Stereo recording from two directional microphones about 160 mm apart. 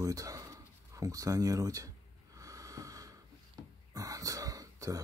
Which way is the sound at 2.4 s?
20° right (ahead or behind).